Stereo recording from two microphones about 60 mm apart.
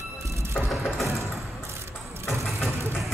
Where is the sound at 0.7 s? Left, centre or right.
Centre.